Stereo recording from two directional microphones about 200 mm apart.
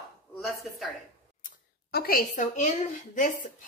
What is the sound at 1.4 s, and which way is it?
A woman's voice, 50° left (ahead or behind).